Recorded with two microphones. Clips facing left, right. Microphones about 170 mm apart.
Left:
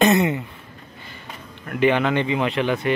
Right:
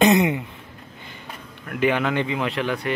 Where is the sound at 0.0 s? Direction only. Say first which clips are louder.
Even; 15° right (ahead or behind).